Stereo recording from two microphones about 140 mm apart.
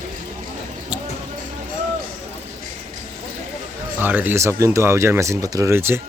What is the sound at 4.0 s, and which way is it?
Speech, 15° right (ahead or behind).